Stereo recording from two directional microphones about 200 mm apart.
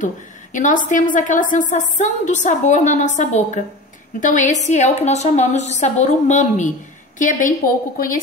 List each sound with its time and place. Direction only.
0.0 s a woman's voice: 40° left (ahead or behind)